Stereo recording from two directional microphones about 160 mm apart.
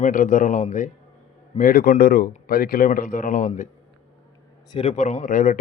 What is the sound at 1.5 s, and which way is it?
Speech, 60° left (ahead or behind).